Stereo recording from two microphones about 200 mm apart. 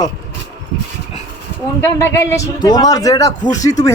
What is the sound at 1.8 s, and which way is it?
A man's voice, 15° left (ahead or behind).